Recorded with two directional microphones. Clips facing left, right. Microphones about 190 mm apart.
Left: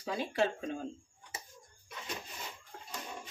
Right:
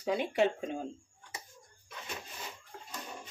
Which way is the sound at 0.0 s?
20° right (ahead or behind).